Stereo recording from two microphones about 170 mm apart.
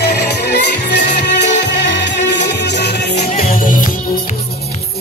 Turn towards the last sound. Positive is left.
turn(degrees=80)